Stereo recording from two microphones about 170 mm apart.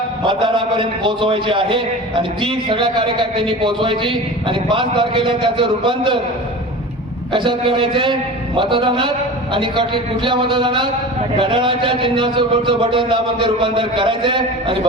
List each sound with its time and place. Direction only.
0.3 s a man's voice: 30° right (ahead or behind)
7.3 s a man's voice: 30° right (ahead or behind)